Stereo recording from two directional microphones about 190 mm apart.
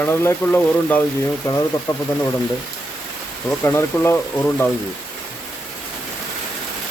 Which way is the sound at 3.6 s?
15° left (ahead or behind).